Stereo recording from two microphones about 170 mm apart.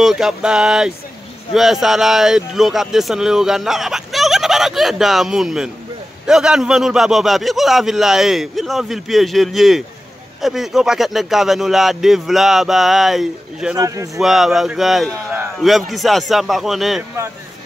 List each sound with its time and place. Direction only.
0.0 s speech: centre (ahead or behind)
13.7 s speech: 20° right (ahead or behind)
14.1 s speech: centre (ahead or behind)